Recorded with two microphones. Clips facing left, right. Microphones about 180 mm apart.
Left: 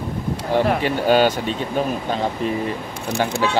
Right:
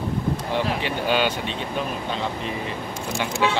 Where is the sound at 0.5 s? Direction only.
50° left (ahead or behind).